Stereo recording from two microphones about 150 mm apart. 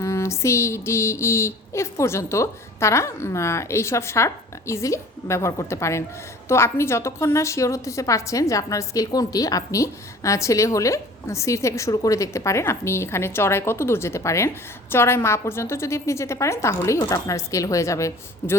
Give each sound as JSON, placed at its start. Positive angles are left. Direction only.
{"t": 0.0, "sound": "a woman's voice", "side_deg": 20}